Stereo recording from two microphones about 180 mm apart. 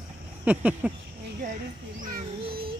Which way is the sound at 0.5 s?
10° right (ahead or behind).